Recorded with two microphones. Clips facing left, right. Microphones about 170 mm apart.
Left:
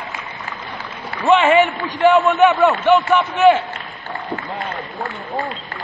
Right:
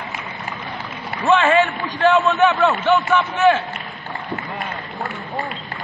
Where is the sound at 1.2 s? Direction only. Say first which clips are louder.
Left 2 dB; 20° left (ahead or behind).